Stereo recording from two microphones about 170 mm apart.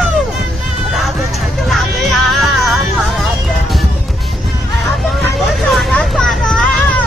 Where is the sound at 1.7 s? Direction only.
Centre (ahead or behind).